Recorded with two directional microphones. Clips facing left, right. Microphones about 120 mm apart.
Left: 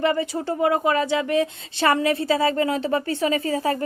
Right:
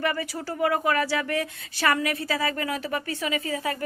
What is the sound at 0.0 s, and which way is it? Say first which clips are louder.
Speech: left 6 dB; 25° left (ahead or behind).